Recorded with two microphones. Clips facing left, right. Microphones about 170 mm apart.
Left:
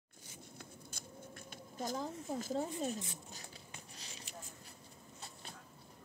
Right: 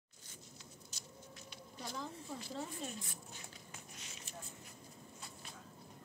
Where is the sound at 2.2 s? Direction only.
45° left (ahead or behind).